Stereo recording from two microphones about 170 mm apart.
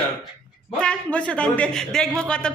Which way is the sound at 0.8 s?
5° left (ahead or behind).